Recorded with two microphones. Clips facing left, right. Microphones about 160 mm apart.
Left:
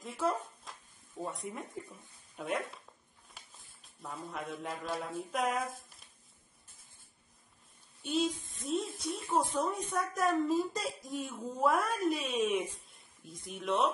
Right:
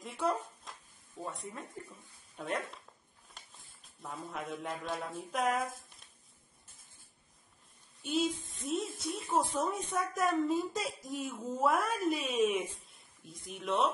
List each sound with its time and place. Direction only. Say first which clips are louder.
0.0 s a sound: even; centre (ahead or behind)
1.8 s speech: left 3 dB; 20° left (ahead or behind)
2.3 s speech: left 1 dB; centre (ahead or behind)
4.0 s a woman's voice: even; centre (ahead or behind)
8.0 s a woman's voice: even; centre (ahead or behind)